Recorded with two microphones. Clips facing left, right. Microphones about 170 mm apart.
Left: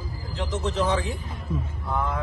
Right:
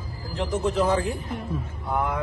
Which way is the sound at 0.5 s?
10° right (ahead or behind).